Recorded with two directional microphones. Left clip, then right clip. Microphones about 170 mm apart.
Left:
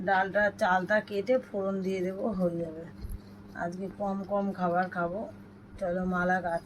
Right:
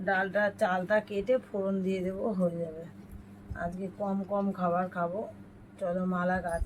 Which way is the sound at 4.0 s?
30° right (ahead or behind).